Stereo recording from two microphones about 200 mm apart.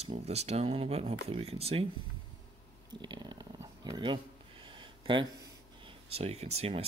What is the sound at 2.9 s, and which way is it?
Speech, 20° right (ahead or behind).